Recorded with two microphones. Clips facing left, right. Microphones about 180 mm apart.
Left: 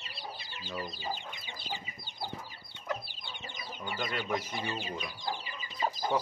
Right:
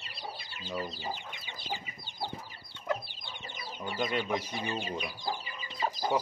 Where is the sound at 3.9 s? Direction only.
15° right (ahead or behind).